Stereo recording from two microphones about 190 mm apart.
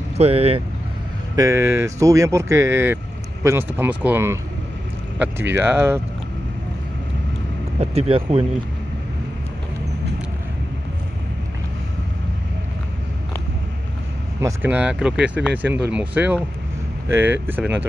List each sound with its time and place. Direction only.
0.2 s speech: 30° right (ahead or behind)
1.3 s speech: 15° right (ahead or behind)
7.8 s speech: 30° right (ahead or behind)
14.4 s speech: 10° right (ahead or behind)